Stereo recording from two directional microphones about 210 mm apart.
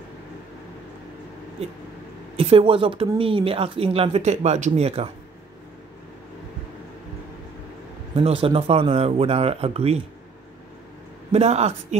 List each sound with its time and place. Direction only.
2.3 s speech: 25° right (ahead or behind)
8.1 s speech: 25° right (ahead or behind)
11.3 s a man's voice: 30° right (ahead or behind)